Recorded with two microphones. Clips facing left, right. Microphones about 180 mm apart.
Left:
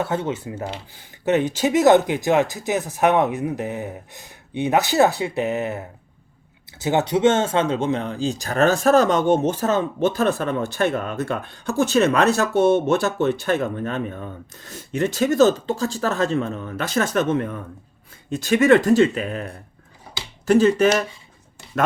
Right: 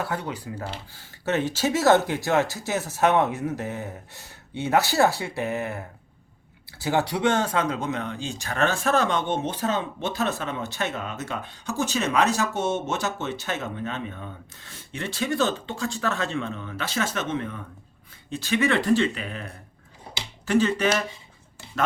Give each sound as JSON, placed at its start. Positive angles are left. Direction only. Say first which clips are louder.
{"t": 0.0, "sound": "speech", "louder": "left 6 dB", "side_deg": 25}